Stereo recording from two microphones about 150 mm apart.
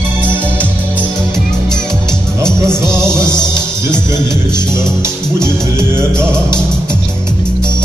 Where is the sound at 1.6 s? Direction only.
5° left (ahead or behind).